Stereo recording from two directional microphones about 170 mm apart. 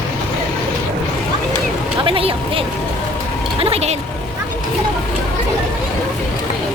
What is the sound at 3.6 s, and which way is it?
Speech, 35° right (ahead or behind).